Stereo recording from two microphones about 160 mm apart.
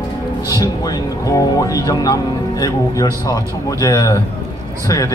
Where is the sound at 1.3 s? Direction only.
20° left (ahead or behind).